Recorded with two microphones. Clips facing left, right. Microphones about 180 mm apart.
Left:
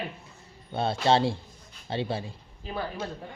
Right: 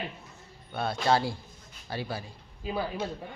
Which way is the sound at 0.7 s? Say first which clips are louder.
Left 3 dB; 25° left (ahead or behind).